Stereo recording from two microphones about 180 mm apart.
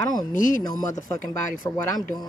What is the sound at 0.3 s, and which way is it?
Speech, 45° left (ahead or behind).